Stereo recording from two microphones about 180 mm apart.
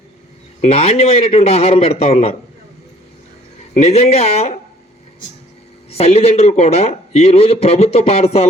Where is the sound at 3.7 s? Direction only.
35° left (ahead or behind).